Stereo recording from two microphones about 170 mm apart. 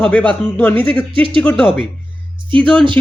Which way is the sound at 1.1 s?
30° right (ahead or behind).